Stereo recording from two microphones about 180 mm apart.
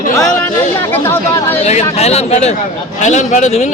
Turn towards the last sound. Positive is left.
turn(degrees=40)  # may be behind; listen again after turning